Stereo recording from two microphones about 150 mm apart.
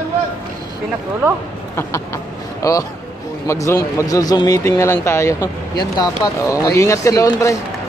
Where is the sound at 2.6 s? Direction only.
20° left (ahead or behind).